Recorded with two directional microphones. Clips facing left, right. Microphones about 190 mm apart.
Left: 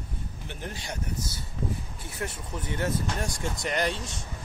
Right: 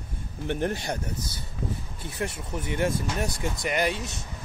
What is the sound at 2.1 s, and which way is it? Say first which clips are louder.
Speech: right 3 dB; 10° right (ahead or behind).